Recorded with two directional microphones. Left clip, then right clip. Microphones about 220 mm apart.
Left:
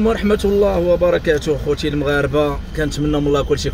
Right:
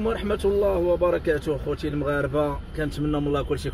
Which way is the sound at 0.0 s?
20° left (ahead or behind).